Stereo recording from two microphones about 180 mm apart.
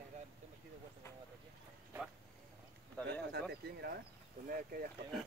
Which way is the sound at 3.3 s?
65° right (ahead or behind).